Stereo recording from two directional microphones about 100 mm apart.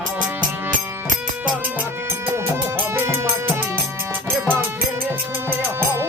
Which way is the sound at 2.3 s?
25° right (ahead or behind).